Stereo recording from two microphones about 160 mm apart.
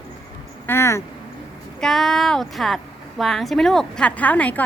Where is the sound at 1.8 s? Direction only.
Centre (ahead or behind).